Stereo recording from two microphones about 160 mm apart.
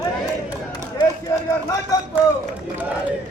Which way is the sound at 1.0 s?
25° left (ahead or behind).